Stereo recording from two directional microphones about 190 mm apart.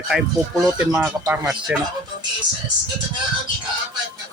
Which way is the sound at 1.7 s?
5° right (ahead or behind).